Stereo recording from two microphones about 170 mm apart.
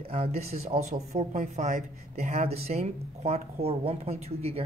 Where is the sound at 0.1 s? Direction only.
40° right (ahead or behind).